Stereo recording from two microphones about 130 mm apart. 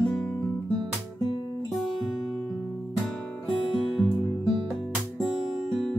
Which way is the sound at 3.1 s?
5° left (ahead or behind).